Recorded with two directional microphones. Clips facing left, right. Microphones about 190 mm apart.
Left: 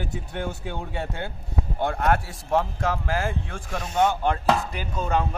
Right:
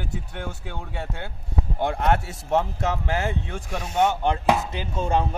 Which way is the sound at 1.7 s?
15° right (ahead or behind).